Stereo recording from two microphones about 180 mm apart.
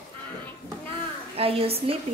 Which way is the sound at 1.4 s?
30° right (ahead or behind).